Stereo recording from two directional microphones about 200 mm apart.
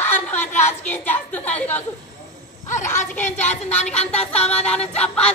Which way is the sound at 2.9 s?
15° left (ahead or behind).